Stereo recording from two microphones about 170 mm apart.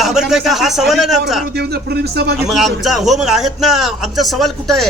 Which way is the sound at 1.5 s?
70° right (ahead or behind).